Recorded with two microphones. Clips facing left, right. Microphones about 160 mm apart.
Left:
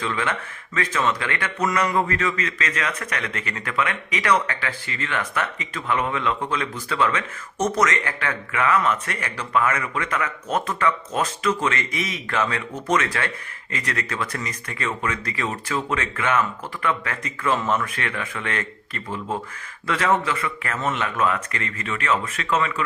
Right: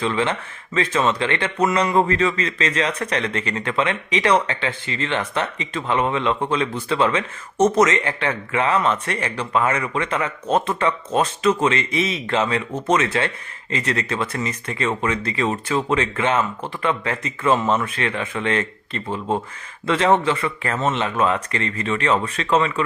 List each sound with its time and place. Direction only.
0.0 s speech: 25° right (ahead or behind)